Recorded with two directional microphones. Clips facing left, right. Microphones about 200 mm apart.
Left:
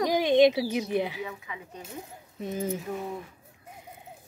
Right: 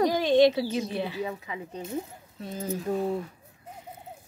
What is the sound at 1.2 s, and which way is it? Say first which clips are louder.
Speech: right 4 dB; 35° right (ahead or behind).